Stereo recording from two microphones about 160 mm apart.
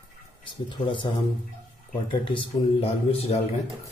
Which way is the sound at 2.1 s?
30° left (ahead or behind).